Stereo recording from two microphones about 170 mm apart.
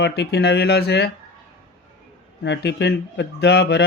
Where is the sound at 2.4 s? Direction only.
90° left.